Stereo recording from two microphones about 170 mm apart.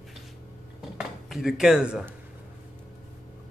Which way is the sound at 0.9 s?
Centre (ahead or behind).